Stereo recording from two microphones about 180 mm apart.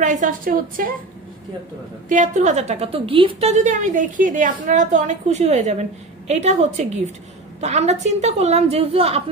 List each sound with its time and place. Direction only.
0.0 s a woman's voice: 45° right (ahead or behind)
2.0 s a woman's voice: 45° right (ahead or behind)